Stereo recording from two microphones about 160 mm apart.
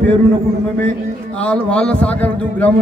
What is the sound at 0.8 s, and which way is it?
A man's voice, 10° left (ahead or behind).